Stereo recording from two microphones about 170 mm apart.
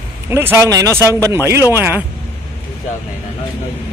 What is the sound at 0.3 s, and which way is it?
Speech, 15° right (ahead or behind).